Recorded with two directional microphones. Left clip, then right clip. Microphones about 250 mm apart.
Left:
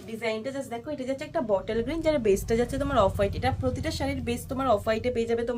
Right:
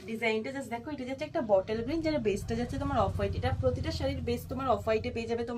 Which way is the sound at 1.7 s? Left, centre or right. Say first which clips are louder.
Left 5 dB; left.